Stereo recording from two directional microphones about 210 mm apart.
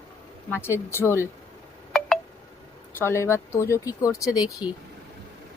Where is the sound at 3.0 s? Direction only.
10° left (ahead or behind).